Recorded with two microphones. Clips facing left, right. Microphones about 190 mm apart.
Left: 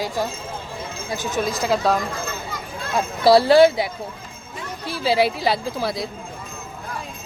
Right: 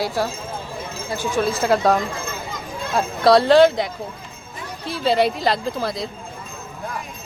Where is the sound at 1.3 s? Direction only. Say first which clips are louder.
Right 3 dB; 15° left (ahead or behind).